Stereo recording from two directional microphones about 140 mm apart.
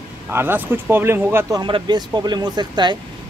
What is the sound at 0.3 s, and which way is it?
Speech, 15° right (ahead or behind).